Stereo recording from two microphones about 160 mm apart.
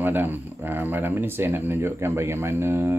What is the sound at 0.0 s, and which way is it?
Speech, 10° right (ahead or behind).